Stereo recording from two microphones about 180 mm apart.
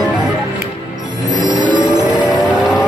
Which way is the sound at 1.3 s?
25° right (ahead or behind).